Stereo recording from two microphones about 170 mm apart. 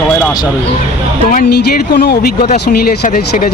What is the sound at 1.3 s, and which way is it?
Speech, 50° left (ahead or behind).